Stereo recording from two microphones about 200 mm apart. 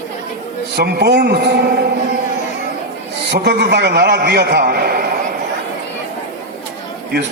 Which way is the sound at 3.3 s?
55° right (ahead or behind).